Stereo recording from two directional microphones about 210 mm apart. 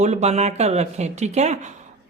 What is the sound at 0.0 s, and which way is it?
Speech, 30° right (ahead or behind).